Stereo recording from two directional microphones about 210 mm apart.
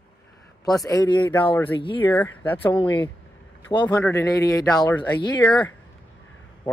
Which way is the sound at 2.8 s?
20° left (ahead or behind).